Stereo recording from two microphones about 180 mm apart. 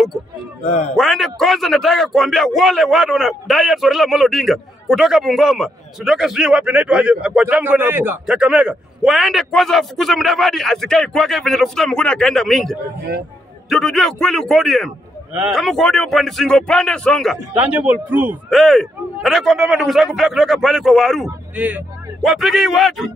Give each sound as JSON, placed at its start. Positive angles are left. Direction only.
{"t": 0.6, "sound": "a man's voice", "side_deg": 35}
{"t": 0.9, "sound": "a man's voice", "side_deg": 0}